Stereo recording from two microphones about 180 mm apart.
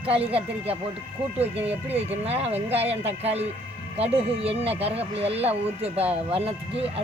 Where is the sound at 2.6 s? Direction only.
10° right (ahead or behind).